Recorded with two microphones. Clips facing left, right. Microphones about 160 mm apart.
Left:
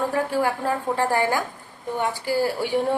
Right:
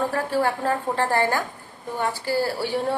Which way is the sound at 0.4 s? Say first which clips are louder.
Even; 10° left (ahead or behind).